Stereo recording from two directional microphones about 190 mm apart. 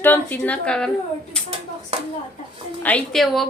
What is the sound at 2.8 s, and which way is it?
Speech, 5° left (ahead or behind).